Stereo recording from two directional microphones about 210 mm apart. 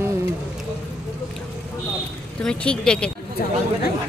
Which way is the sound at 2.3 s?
5° left (ahead or behind).